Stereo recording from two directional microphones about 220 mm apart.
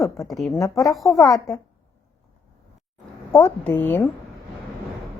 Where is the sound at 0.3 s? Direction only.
Centre (ahead or behind).